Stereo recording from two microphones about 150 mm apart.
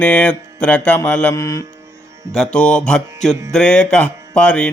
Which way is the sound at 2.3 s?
5° left (ahead or behind).